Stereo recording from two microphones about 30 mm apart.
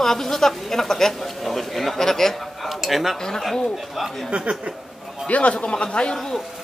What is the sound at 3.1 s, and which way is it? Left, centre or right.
Speech, centre.